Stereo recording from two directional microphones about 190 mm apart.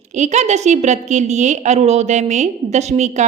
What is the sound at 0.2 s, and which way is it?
A woman's voice, 35° right (ahead or behind).